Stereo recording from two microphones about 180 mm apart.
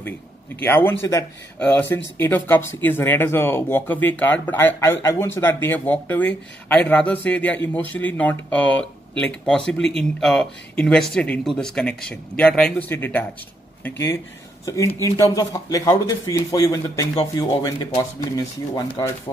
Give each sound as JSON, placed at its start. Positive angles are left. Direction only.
{"t": 0.6, "sound": "speech", "side_deg": 10}